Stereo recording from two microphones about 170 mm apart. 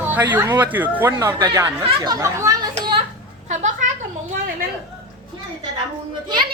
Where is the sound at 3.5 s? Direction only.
45° right (ahead or behind).